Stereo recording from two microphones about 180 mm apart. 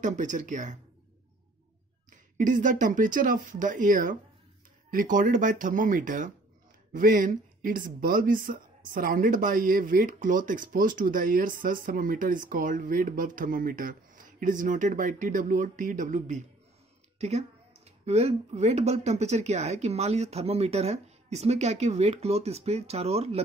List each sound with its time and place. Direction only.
0.0 s speech: 45° right (ahead or behind)
2.0 s speech: 45° right (ahead or behind)